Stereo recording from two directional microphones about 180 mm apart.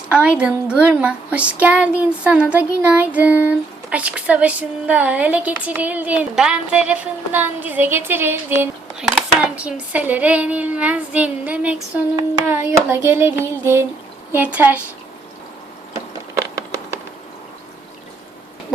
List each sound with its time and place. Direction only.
0.1 s a woman's voice: 5° right (ahead or behind)